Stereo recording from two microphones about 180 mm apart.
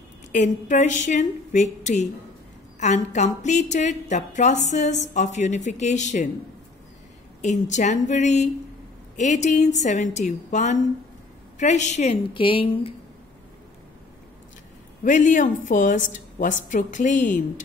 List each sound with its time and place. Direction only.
0.3 s a woman's voice: 45° left (ahead or behind)
7.4 s a woman's voice: 40° left (ahead or behind)
15.0 s a woman's voice: 45° left (ahead or behind)